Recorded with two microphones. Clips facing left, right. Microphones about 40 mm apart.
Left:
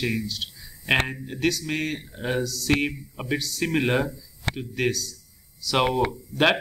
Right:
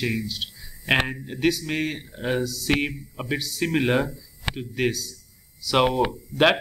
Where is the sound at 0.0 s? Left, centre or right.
Centre.